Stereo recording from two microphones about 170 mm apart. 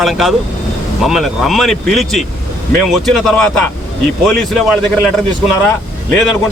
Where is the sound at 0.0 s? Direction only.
Centre (ahead or behind).